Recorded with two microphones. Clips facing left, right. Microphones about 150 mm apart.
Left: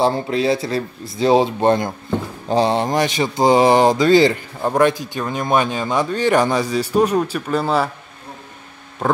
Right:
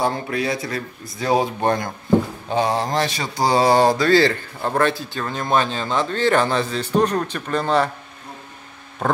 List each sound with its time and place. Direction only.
0.0 s speech: 25° left (ahead or behind); by 7.9 s 5° left (ahead or behind)
9.0 s speech: centre (ahead or behind)